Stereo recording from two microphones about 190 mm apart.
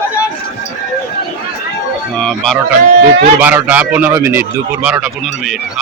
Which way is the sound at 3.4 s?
10° right (ahead or behind).